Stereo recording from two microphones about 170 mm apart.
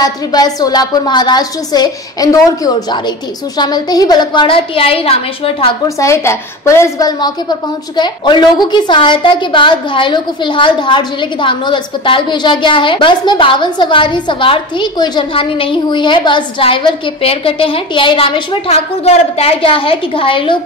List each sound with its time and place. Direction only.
0.0 s a woman's voice: 25° left (ahead or behind)
5.9 s a woman's voice: 15° left (ahead or behind)